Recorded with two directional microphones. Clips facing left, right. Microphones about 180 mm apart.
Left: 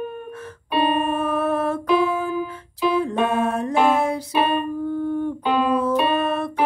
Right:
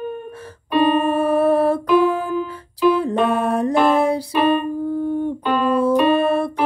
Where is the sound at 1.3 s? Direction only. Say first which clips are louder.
Right 9 dB; 30° right (ahead or behind).